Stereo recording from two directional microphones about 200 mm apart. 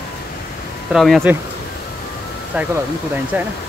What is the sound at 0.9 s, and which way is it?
Speech, centre (ahead or behind).